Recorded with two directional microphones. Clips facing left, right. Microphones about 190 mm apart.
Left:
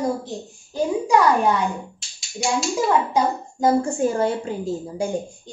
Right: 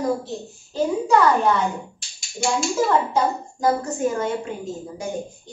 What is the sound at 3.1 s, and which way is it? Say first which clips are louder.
A woman's voice: left 1 dB; 25° left (ahead or behind).